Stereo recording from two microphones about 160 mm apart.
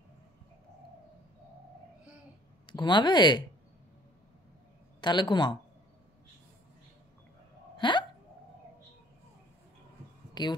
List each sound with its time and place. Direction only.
2.6 s speech: 30° left (ahead or behind)
5.0 s speech: 30° left (ahead or behind)
7.7 s hiccup: 30° left (ahead or behind)
10.4 s speech: 25° left (ahead or behind)